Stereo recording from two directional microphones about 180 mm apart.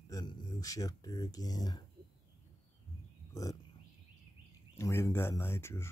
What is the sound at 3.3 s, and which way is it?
Speech, 20° left (ahead or behind).